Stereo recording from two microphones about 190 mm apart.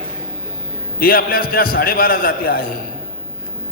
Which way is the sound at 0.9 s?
50° left (ahead or behind).